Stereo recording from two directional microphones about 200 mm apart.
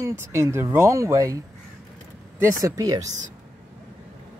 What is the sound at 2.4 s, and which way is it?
Speech, 15° right (ahead or behind).